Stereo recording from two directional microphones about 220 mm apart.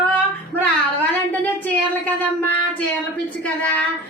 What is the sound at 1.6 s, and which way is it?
A woman's voice, 5° left (ahead or behind).